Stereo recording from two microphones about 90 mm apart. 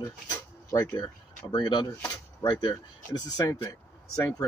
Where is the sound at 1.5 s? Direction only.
60° left (ahead or behind).